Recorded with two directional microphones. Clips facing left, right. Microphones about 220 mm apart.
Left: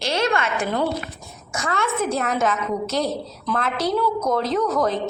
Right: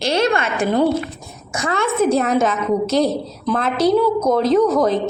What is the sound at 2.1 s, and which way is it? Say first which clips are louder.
A woman's voice: right 6 dB; 20° right (ahead or behind).